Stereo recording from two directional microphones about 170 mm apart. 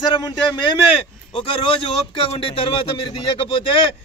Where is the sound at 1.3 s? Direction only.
30° left (ahead or behind).